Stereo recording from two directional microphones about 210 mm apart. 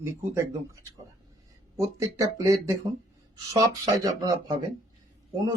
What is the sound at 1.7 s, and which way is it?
Speech, 15° right (ahead or behind).